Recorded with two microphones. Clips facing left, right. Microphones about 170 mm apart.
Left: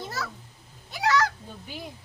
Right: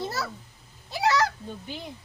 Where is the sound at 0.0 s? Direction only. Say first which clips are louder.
Right 3 dB; 30° right (ahead or behind).